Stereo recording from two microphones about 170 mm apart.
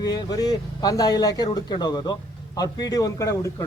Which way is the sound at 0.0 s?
25° left (ahead or behind).